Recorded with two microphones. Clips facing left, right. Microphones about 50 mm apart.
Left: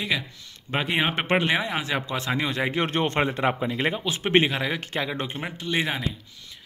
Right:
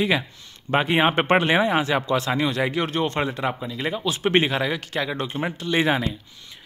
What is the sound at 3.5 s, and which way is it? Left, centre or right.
Speech, left.